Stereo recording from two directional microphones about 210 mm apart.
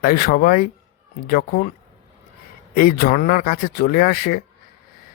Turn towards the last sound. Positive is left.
turn(degrees=45)  # may be behind; listen again after turning